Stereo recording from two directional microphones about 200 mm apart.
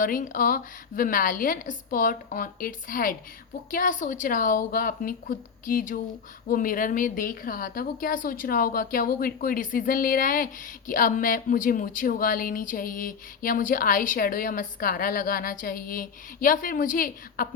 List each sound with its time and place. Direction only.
0.0 s a woman's voice: 45° left (ahead or behind)